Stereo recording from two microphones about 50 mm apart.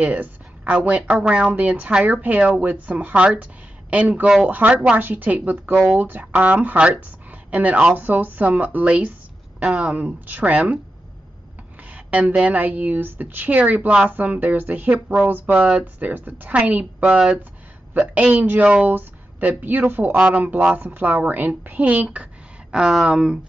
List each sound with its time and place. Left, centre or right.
0.0 s a sound: right
0.7 s a woman's voice: right
9.9 s a woman's voice: right
11.9 s a woman's voice: right
18.6 s a woman's voice: right
18.9 s speech: right
20.2 s a woman's voice: right